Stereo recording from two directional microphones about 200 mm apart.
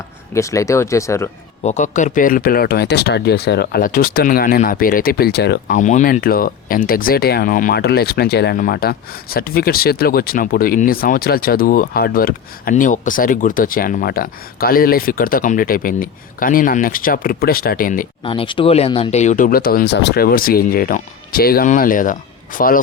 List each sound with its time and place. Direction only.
0.3 s speech: 15° left (ahead or behind)
1.6 s speech: 35° left (ahead or behind); by 5.7 s 55° left (ahead or behind)
5.7 s speech: 40° left (ahead or behind)
18.2 s speech: 25° left (ahead or behind); by 22.8 s 45° left (ahead or behind)